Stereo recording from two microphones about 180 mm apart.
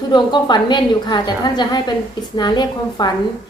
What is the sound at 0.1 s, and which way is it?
A woman's voice, 25° left (ahead or behind).